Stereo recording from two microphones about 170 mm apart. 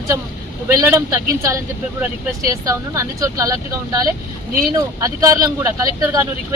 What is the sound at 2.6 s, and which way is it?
Speech, 20° right (ahead or behind).